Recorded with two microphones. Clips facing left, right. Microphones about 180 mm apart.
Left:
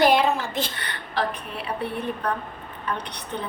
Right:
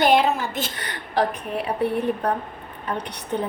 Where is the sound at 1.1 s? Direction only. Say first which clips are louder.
Right 5 dB; 45° right (ahead or behind).